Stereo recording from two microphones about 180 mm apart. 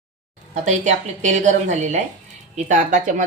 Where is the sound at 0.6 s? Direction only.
40° right (ahead or behind).